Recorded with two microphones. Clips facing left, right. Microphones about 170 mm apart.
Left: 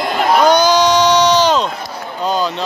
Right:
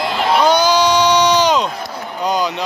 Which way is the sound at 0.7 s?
10° right (ahead or behind).